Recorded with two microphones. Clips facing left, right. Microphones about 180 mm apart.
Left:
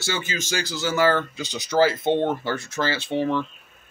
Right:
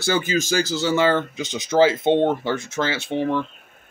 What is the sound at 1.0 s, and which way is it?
Speech, 20° right (ahead or behind).